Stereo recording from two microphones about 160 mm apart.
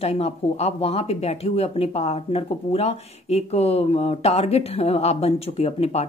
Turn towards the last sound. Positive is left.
turn(degrees=40)  # may be behind; listen again after turning